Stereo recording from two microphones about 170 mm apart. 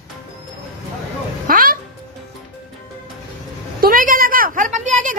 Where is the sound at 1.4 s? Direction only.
55° right (ahead or behind).